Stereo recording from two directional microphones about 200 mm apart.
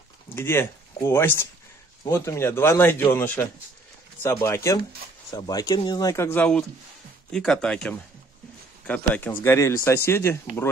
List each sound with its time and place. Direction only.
0.4 s speech: 10° left (ahead or behind)